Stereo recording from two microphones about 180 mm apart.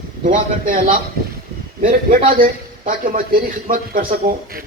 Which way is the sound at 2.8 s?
50° right (ahead or behind).